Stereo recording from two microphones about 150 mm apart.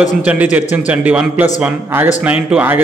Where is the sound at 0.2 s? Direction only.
10° right (ahead or behind).